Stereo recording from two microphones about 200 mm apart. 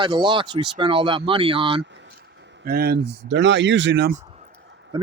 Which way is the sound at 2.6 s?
50° right (ahead or behind).